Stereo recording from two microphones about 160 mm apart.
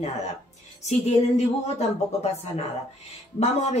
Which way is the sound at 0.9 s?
40° left (ahead or behind).